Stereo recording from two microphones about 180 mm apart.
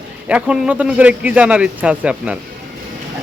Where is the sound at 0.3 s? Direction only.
5° right (ahead or behind).